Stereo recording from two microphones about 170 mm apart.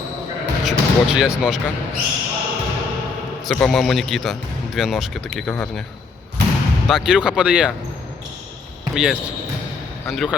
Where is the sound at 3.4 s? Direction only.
5° left (ahead or behind).